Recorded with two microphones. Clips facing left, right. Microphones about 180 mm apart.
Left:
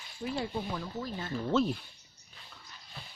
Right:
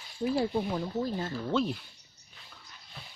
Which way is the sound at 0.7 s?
30° right (ahead or behind).